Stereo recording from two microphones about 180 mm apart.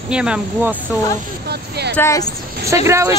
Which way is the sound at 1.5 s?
65° right (ahead or behind).